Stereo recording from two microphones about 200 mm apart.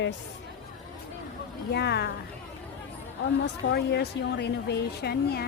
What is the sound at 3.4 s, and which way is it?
Speech, 55° left (ahead or behind).